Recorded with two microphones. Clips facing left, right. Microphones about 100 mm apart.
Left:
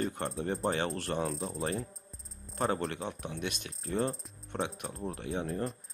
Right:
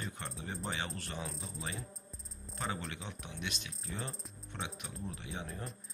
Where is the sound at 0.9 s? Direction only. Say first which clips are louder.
Left 10 dB; 65° left (ahead or behind).